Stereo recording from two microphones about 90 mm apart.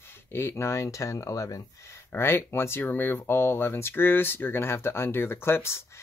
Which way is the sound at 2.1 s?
25° left (ahead or behind).